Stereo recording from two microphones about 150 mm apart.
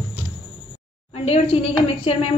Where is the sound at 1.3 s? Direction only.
40° left (ahead or behind).